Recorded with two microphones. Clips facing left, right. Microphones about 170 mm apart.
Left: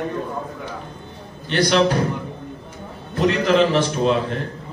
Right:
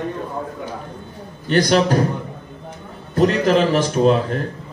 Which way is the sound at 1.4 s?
45° right (ahead or behind).